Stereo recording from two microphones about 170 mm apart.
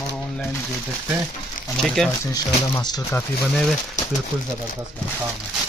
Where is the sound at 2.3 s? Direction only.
20° left (ahead or behind).